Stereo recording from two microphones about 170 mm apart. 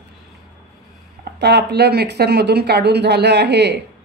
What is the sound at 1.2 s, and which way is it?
A man's voice, 75° right (ahead or behind).